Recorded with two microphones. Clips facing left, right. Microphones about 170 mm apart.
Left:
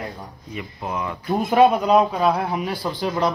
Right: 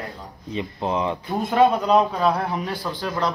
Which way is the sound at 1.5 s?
10° left (ahead or behind).